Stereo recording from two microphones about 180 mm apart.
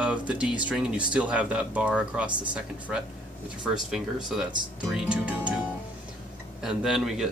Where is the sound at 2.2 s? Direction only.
25° right (ahead or behind).